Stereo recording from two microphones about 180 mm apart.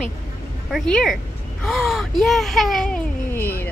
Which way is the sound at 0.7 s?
Centre (ahead or behind).